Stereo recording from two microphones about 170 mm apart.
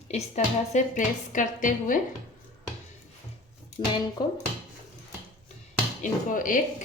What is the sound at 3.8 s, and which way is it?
Speech, 35° left (ahead or behind).